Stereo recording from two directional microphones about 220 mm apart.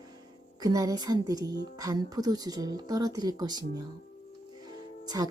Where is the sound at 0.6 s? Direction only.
15° right (ahead or behind).